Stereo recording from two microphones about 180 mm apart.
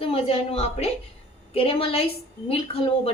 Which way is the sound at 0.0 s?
35° left (ahead or behind).